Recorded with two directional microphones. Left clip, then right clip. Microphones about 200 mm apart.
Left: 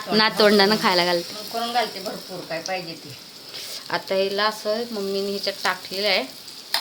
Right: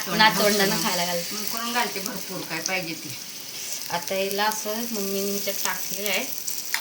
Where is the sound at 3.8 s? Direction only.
15° left (ahead or behind).